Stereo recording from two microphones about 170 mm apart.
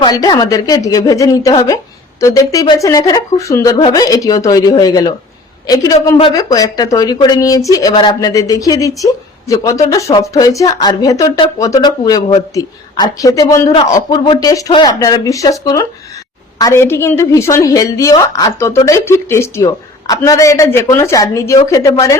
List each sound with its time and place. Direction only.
0.0 s a woman's voice: 25° left (ahead or behind)